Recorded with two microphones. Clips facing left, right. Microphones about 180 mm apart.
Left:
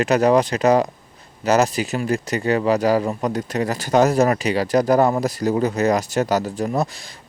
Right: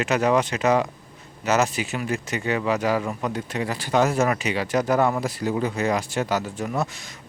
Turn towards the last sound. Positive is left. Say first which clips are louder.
# left 4 dB
turn(degrees=35)  # may be behind; listen again after turning